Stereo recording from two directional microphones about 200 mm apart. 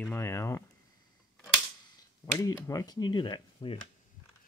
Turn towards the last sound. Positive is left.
turn(degrees=25)  # may be behind; listen again after turning